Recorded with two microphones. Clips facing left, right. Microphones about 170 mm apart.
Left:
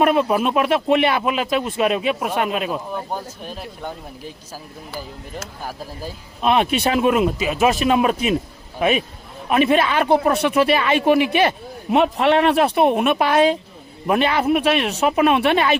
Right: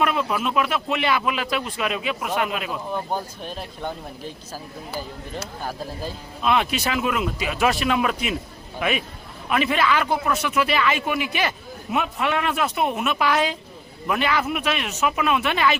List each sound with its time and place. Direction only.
0.2 s speech: 30° left (ahead or behind)
3.1 s speech: 5° left (ahead or behind)
6.4 s speech: 25° left (ahead or behind)
9.5 s speech: 25° left (ahead or behind)